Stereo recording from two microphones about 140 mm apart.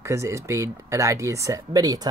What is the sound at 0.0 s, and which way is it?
Speech, 20° right (ahead or behind).